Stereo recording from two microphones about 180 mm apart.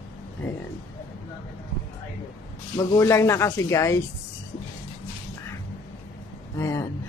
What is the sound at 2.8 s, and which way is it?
Speech, 15° left (ahead or behind).